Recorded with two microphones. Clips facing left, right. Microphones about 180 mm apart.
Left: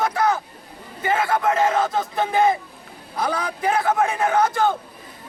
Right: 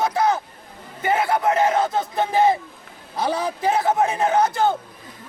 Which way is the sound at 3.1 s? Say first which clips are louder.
Right 2 dB; 25° right (ahead or behind).